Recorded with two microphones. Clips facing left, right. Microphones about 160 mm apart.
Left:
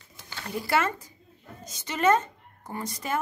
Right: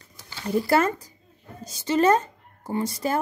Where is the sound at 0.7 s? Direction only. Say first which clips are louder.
Right 3 dB; 35° right (ahead or behind).